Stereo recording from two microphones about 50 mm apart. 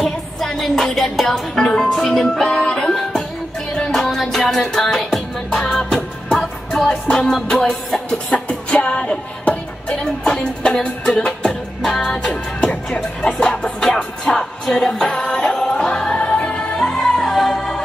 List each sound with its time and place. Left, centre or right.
0.0 s music: centre; by 9.9 s left
11.1 s music: centre